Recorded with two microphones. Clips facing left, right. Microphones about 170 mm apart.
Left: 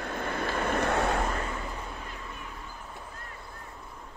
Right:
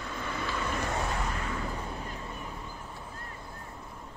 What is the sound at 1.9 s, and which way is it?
Vehicle, 35° right (ahead or behind).